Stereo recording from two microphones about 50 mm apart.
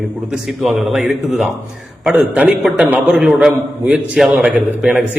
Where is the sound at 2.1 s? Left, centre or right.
Right.